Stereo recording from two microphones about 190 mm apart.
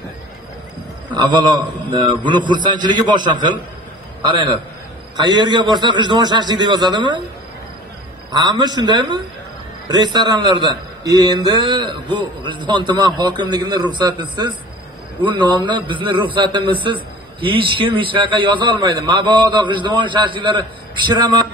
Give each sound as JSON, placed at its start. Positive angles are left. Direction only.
{"t": 1.1, "sound": "a man's voice", "side_deg": -25}
{"t": 8.3, "sound": "a man's voice", "side_deg": -20}
{"t": 15.2, "sound": "a man's voice", "side_deg": -25}